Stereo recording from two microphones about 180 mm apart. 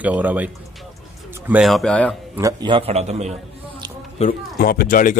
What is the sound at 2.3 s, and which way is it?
A man's voice, 20° right (ahead or behind).